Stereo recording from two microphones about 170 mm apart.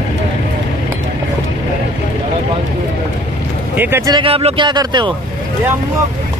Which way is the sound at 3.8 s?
15° right (ahead or behind).